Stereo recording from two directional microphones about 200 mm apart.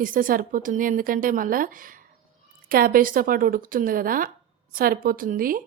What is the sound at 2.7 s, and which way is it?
Speech, 45° right (ahead or behind).